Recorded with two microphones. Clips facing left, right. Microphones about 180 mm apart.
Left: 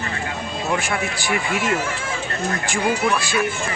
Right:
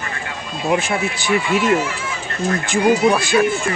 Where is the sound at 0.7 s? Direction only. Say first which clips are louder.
Right 5 dB; 20° right (ahead or behind).